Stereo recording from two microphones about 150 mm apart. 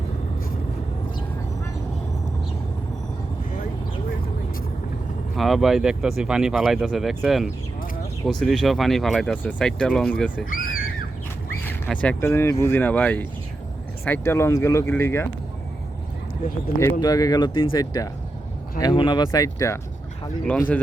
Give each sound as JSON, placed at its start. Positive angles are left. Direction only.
{"t": 5.4, "sound": "speech", "side_deg": 0}
{"t": 10.5, "sound": "a sound", "side_deg": 70}
{"t": 11.9, "sound": "speech", "side_deg": 10}
{"t": 16.8, "sound": "speech", "side_deg": 25}